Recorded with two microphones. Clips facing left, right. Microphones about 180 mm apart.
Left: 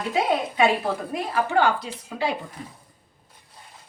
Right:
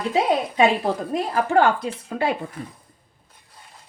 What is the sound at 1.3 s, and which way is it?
Speech, 45° right (ahead or behind).